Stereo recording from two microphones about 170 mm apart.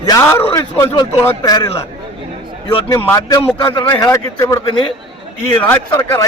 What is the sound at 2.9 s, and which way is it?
A man's voice, 20° left (ahead or behind).